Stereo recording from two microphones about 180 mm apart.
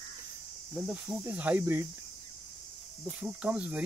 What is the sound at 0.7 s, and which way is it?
Cricket, 5° right (ahead or behind).